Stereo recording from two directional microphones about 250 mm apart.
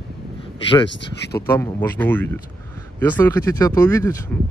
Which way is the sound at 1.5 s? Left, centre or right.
Centre.